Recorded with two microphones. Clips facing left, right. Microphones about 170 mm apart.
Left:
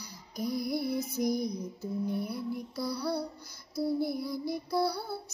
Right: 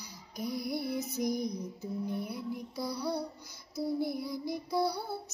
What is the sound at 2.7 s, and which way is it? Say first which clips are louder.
Female singing: left 1 dB; 15° right (ahead or behind).